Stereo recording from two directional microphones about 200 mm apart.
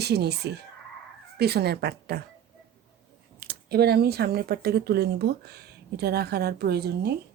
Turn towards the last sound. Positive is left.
turn(degrees=-55)  # may be behind; listen again after turning